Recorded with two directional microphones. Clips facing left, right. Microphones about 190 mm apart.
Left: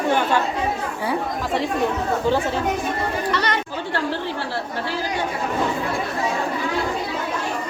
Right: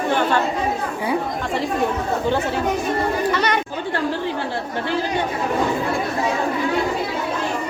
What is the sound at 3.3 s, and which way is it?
Chatter, 15° right (ahead or behind).